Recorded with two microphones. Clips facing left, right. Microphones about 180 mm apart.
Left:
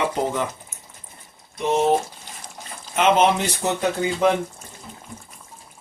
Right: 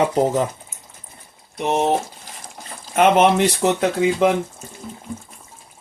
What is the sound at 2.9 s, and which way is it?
Speech, 60° right (ahead or behind).